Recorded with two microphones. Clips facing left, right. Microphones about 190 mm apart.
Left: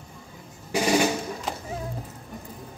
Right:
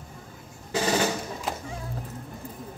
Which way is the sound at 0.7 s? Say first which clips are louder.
Left 3 dB; 15° left (ahead or behind).